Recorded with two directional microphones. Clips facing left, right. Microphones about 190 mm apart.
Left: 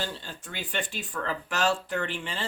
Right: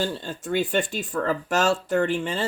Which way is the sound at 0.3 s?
50° right (ahead or behind).